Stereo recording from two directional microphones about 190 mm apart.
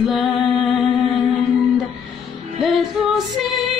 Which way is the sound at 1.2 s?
Centre (ahead or behind).